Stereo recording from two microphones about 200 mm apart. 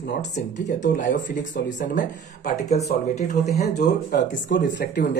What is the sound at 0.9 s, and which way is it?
Speech, 40° left (ahead or behind).